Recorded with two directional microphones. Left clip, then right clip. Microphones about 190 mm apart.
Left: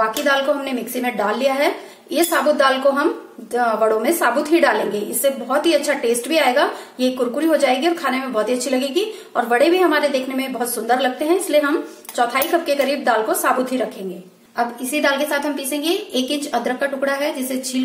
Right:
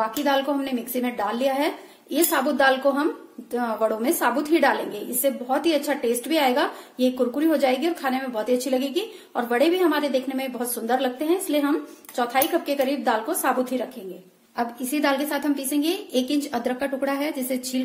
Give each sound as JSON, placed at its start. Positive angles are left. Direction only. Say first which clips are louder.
{"t": 0.2, "sound": "a woman's voice", "louder": "left 5 dB", "side_deg": -35}
{"t": 14.6, "sound": "a woman's voice", "louder": "left 5 dB", "side_deg": -40}